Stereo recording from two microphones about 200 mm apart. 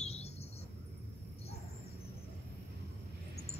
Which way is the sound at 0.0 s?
30° left (ahead or behind).